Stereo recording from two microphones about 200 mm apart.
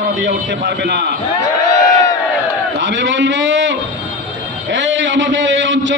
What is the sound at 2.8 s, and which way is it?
A man's voice, 65° right (ahead or behind).